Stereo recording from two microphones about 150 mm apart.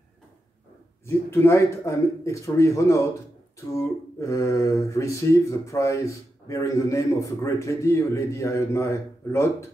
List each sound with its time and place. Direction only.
1.0 s a man's voice: 15° left (ahead or behind)